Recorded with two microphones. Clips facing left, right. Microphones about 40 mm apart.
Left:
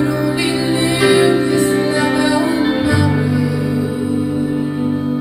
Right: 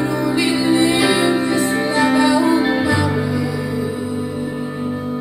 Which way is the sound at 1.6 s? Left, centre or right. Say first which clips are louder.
Left 2 dB; centre.